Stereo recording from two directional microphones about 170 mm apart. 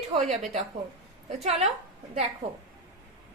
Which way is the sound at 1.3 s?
40° right (ahead or behind).